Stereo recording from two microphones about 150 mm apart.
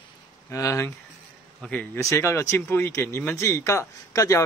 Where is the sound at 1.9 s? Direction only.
20° left (ahead or behind).